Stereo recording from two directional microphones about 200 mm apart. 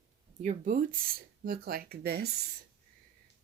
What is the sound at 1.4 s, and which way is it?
Speech, 50° right (ahead or behind).